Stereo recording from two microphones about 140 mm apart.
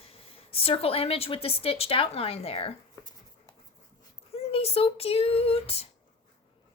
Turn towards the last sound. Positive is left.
turn(degrees=45)  # may be behind; listen again after turning